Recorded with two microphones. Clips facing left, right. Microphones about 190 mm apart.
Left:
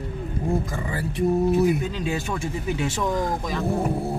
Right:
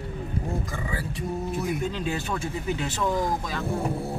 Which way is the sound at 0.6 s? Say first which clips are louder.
Left 3 dB; 45° left (ahead or behind).